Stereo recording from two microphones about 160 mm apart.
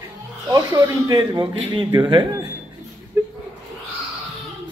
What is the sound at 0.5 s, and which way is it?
Speech, 20° right (ahead or behind).